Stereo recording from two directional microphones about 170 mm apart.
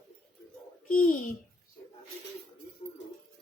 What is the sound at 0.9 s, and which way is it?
Speech, 55° left (ahead or behind).